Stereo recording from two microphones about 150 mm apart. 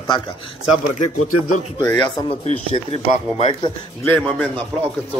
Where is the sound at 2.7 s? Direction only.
40° left (ahead or behind).